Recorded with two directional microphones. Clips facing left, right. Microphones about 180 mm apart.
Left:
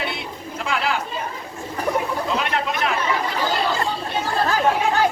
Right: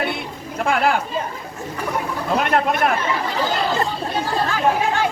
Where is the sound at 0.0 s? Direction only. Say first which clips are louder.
Right 4 dB; 55° right (ahead or behind).